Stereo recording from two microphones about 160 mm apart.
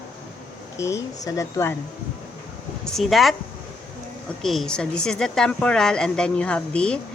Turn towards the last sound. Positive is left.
turn(degrees=5)  # may be behind; listen again after turning